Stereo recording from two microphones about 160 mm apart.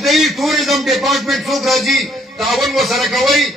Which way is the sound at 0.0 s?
Centre (ahead or behind).